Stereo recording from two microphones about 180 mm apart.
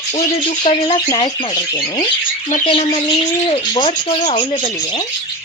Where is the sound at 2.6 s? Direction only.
35° left (ahead or behind).